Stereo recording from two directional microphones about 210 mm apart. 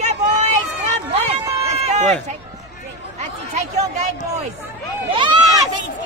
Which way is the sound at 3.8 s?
35° right (ahead or behind).